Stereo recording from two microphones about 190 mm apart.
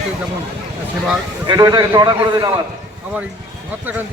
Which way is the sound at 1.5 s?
20° right (ahead or behind).